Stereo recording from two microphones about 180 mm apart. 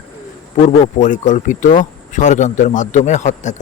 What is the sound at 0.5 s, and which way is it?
Speech, 45° left (ahead or behind).